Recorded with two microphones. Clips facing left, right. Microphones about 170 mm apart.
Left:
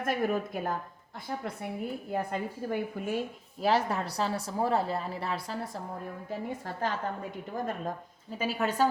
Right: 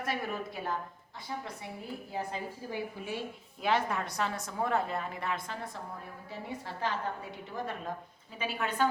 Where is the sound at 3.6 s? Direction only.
35° left (ahead or behind).